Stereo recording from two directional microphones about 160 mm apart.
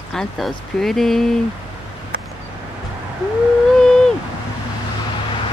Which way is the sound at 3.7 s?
5° left (ahead or behind).